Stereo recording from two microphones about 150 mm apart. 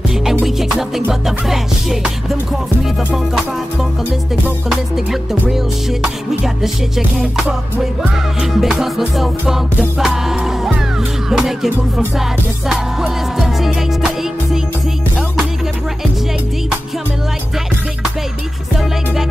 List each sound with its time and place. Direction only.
0.1 s music: centre (ahead or behind)
4.6 s music: 5° right (ahead or behind)